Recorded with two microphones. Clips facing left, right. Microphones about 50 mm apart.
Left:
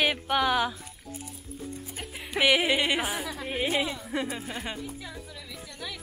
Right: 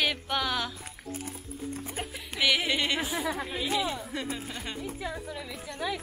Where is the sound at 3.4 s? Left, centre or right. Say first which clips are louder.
Left 2 dB; left.